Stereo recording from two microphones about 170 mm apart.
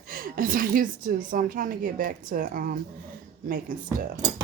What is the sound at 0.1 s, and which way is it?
A woman's voice, 55° right (ahead or behind).